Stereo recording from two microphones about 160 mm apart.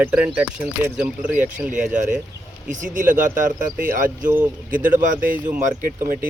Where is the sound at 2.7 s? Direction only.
55° right (ahead or behind).